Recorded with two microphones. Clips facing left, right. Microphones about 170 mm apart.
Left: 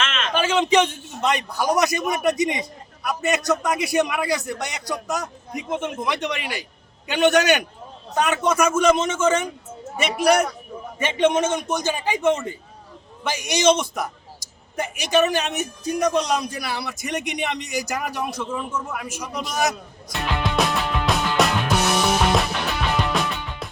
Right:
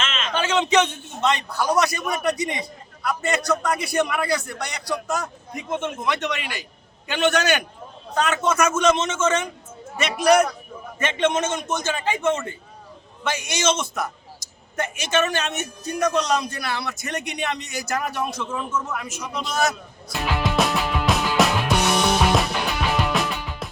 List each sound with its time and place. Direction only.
0.0 s a sound: 55° left (ahead or behind)
0.3 s a man's voice: 10° left (ahead or behind)
5.5 s speech: centre (ahead or behind)
5.8 s a man's voice: 10° left (ahead or behind)
20.1 s music: 5° right (ahead or behind)